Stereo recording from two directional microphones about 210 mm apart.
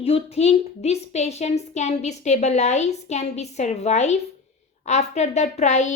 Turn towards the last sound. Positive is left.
turn(degrees=35)  # may be behind; listen again after turning